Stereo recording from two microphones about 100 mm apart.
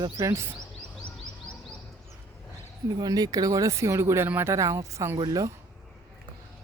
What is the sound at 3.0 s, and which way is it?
Speech, 40° right (ahead or behind).